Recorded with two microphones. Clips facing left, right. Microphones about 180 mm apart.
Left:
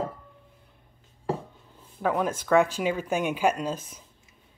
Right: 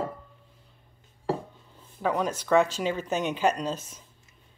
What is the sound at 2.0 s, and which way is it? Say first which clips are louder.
Speech: left 1 dB; 5° left (ahead or behind).